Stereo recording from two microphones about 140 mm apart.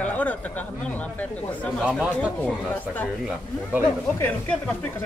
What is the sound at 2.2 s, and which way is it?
Speech, 10° left (ahead or behind).